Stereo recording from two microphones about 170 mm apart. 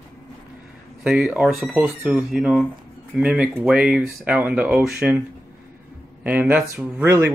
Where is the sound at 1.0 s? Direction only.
5° right (ahead or behind).